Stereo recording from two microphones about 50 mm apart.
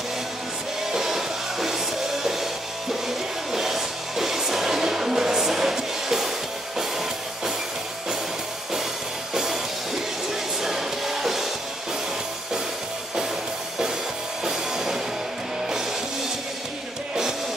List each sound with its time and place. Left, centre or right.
0.9 s music: centre
3.5 s music: centre
9.3 s music: centre
10.6 s music: centre
14.4 s music: centre